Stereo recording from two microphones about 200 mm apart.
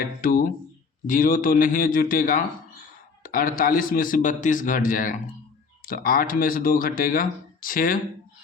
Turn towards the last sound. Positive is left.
turn(degrees=45)  # may be behind; listen again after turning